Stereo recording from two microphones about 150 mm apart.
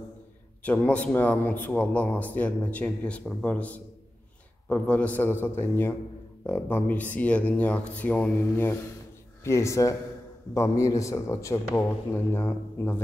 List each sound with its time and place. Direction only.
0.7 s a man's voice: 10° left (ahead or behind)